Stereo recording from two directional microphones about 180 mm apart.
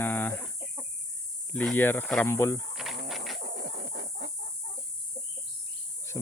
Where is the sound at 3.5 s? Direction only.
55° right (ahead or behind).